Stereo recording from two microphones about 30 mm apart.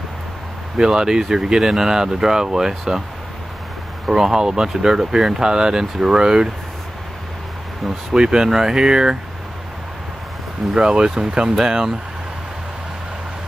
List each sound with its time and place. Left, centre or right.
0.7 s speech: centre
4.1 s speech: centre
8.1 s speech: right
10.7 s speech: right